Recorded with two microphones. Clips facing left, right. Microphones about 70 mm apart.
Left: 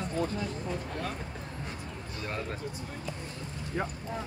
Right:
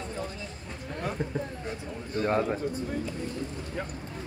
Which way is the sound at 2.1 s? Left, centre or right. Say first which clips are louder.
Right 11 dB; right.